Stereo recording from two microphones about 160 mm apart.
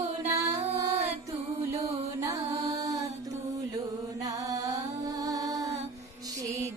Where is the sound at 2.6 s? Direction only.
25° right (ahead or behind).